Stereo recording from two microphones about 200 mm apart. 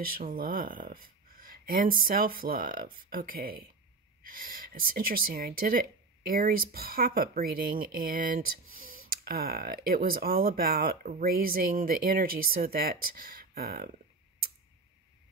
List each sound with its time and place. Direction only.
0.2 s speech: 45° right (ahead or behind)